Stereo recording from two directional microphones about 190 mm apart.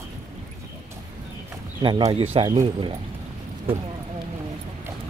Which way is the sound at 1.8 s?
25° right (ahead or behind).